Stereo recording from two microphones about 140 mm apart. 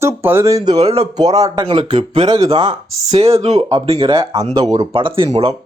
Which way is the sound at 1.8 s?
45° right (ahead or behind).